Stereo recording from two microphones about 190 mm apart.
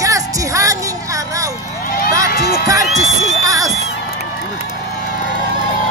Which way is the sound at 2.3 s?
50° left (ahead or behind).